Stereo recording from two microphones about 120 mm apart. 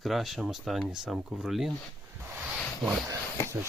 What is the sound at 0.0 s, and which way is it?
Speech, centre (ahead or behind).